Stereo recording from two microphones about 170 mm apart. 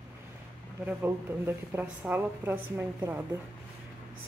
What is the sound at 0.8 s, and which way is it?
A woman's voice, 10° right (ahead or behind).